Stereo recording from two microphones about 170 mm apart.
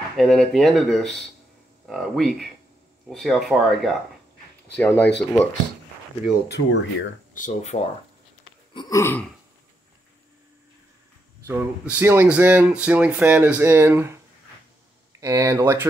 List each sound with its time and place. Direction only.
0.2 s speech: centre (ahead or behind)
4.7 s burping: 10° left (ahead or behind)
6.5 s speech: 90° left
7.3 s speech: 45° left (ahead or behind)
8.7 s burping: 20° left (ahead or behind)
11.4 s speech: 10° right (ahead or behind)
15.1 s speech: 20° right (ahead or behind)